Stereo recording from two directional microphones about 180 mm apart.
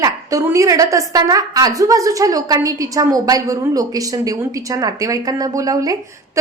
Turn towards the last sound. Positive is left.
turn(degrees=-20)  # may be behind; listen again after turning